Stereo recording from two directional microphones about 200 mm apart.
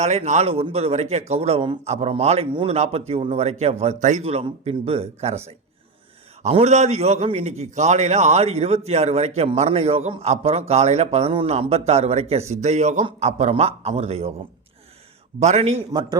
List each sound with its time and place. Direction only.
0.0 s a man's voice: 35° right (ahead or behind)
6.4 s a man's voice: 30° right (ahead or behind)
15.4 s a man's voice: 35° right (ahead or behind)
15.9 s speech: 20° right (ahead or behind)